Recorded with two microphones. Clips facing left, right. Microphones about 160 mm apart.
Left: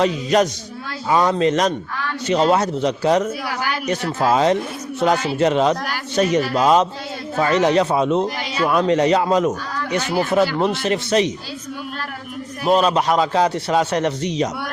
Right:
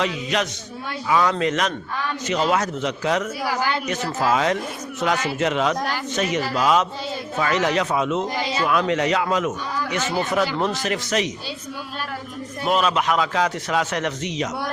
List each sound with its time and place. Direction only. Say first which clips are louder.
0.0 s a man's voice: left 7 dB; 40° left (ahead or behind)
12.6 s a man's voice: left 4 dB; 35° left (ahead or behind)